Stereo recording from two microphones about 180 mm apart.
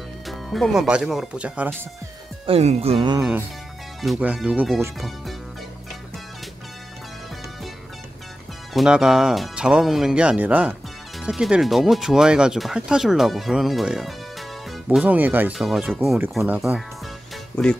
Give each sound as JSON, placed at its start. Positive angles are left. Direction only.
{"t": 0.3, "sound": "speech", "side_deg": 0}
{"t": 2.4, "sound": "speech", "side_deg": -35}
{"t": 3.2, "sound": "speech", "side_deg": -10}
{"t": 8.7, "sound": "speech", "side_deg": -5}